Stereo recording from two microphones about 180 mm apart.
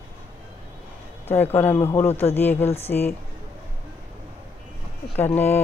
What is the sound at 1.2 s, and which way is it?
A man's voice, 10° left (ahead or behind).